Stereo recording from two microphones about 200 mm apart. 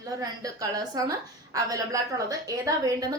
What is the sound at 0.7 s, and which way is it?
A woman's voice, 20° right (ahead or behind).